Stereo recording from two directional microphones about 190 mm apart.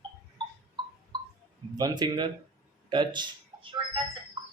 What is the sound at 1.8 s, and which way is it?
Speech, 20° right (ahead or behind).